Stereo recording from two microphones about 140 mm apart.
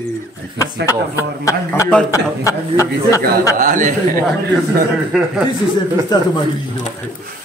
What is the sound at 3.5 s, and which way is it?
Speech, 75° right (ahead or behind).